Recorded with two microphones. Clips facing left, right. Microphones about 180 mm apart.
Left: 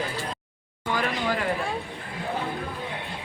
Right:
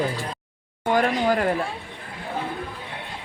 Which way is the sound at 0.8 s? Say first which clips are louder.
Right 6 dB; 50° right (ahead or behind).